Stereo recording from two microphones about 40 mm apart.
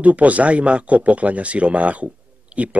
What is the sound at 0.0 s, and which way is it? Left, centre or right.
Speech, right.